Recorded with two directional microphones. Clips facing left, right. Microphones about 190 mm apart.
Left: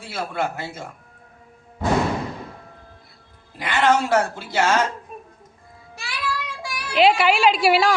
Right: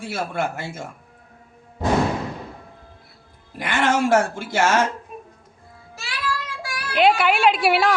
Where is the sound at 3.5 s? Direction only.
50° right (ahead or behind).